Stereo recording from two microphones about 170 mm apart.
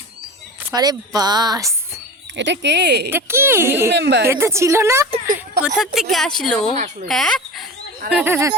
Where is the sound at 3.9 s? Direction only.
85° right.